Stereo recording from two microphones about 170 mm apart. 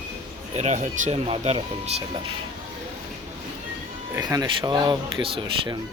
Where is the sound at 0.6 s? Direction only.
40° right (ahead or behind).